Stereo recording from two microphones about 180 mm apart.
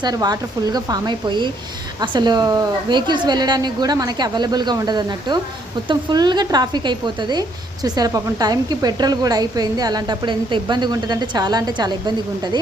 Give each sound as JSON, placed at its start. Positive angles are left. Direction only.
{"t": 0.0, "sound": "a woman's voice", "side_deg": -20}